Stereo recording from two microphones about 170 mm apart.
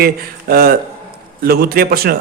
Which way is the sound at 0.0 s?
60° right (ahead or behind).